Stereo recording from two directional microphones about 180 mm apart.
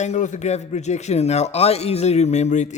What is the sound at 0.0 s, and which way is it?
A man's voice, 40° left (ahead or behind).